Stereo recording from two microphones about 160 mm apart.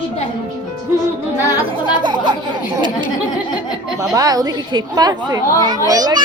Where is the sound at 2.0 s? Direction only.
30° right (ahead or behind).